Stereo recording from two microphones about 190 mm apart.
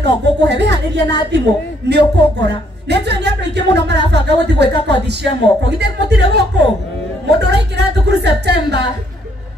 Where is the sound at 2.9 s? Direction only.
60° right (ahead or behind).